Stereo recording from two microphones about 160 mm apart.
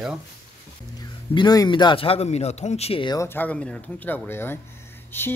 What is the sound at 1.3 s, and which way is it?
Speech, 25° left (ahead or behind).